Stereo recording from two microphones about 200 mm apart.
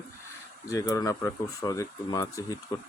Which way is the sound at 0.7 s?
20° left (ahead or behind).